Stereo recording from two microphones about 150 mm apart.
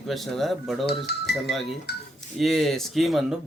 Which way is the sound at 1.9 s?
90° left.